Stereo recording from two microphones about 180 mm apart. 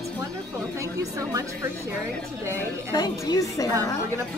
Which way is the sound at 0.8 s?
20° right (ahead or behind).